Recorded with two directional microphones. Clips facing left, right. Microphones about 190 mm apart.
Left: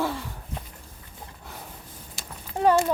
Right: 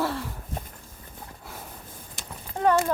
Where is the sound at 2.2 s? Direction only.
30° left (ahead or behind).